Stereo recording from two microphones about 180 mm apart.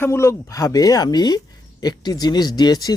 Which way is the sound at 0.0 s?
15° left (ahead or behind).